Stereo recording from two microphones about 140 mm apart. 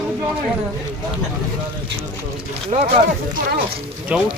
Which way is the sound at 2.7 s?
60° right (ahead or behind).